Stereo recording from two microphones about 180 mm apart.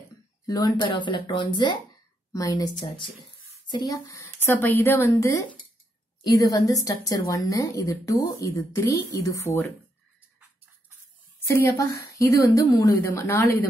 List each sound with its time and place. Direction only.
0.5 s a woman's voice: 20° left (ahead or behind)
11.4 s a woman's voice: 15° left (ahead or behind)